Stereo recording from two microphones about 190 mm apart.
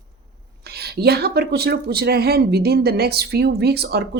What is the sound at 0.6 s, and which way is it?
Speech, 55° right (ahead or behind).